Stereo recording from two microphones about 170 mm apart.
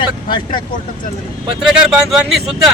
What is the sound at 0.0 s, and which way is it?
Speech, 30° left (ahead or behind).